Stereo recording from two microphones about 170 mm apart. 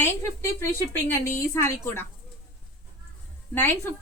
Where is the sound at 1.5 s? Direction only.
15° left (ahead or behind).